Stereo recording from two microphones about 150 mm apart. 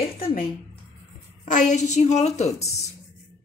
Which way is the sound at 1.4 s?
55° left (ahead or behind).